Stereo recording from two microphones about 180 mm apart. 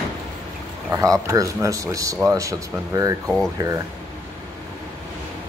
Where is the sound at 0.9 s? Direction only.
15° right (ahead or behind).